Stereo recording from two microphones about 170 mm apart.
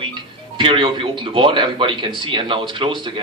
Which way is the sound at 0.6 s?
30° right (ahead or behind).